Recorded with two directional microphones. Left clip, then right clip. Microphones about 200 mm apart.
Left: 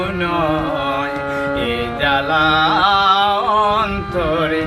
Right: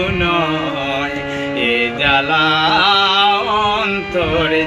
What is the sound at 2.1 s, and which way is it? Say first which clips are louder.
Music: even; 20° left (ahead or behind).